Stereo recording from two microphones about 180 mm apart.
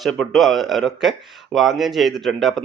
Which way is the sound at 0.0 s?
Centre (ahead or behind).